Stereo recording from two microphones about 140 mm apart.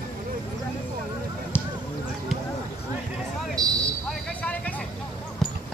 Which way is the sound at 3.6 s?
25° right (ahead or behind).